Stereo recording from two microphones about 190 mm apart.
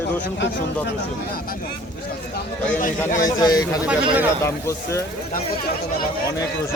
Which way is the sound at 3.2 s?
20° left (ahead or behind).